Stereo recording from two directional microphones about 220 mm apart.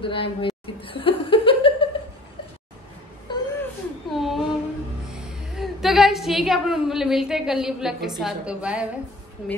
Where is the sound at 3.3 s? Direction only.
20° left (ahead or behind).